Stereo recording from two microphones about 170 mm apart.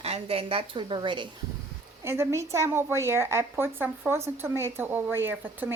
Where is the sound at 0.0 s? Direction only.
35° right (ahead or behind).